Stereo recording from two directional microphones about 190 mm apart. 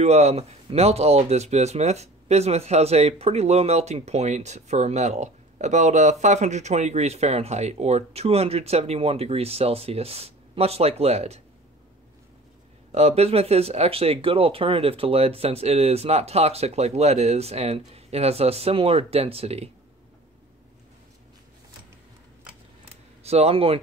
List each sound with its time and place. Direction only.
0.0 s speech: 35° right (ahead or behind)
12.9 s speech: 35° right (ahead or behind)
23.2 s speech: 35° right (ahead or behind)